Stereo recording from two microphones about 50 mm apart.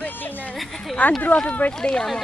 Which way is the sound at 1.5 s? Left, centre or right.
Left.